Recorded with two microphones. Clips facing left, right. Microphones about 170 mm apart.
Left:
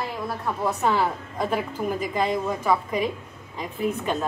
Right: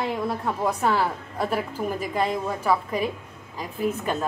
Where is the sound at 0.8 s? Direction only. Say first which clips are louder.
Left 2 dB; 5° right (ahead or behind).